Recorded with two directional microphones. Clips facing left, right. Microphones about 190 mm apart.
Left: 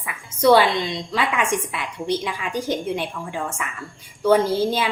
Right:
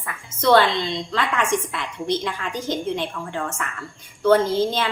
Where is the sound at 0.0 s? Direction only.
10° left (ahead or behind).